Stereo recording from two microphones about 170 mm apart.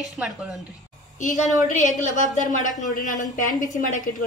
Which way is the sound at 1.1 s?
45° left (ahead or behind).